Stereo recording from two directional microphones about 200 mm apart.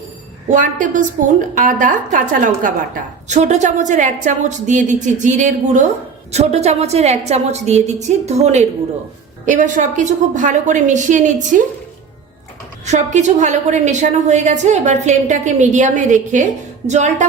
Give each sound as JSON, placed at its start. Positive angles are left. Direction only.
{"t": 0.4, "sound": "a woman's voice", "side_deg": -40}
{"t": 12.8, "sound": "a woman's voice", "side_deg": -35}